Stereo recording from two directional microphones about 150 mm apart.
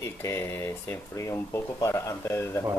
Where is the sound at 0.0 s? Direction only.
20° left (ahead or behind).